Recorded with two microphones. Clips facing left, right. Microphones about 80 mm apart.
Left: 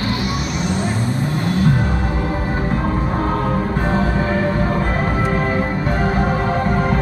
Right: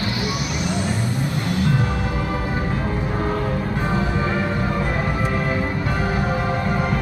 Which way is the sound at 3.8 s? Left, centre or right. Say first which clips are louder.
Left 3 dB; left.